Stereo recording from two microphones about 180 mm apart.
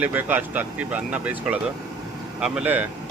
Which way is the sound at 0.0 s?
10° right (ahead or behind).